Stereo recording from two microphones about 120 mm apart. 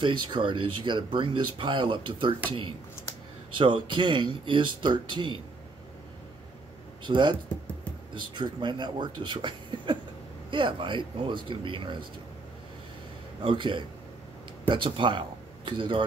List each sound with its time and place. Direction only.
0.0 s speech: 40° right (ahead or behind)
3.5 s speech: 40° right (ahead or behind)
7.1 s speech: 40° right (ahead or behind)
13.4 s speech: 45° right (ahead or behind)